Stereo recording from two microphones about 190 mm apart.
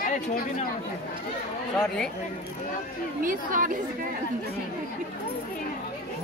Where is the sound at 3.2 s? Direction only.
45° right (ahead or behind).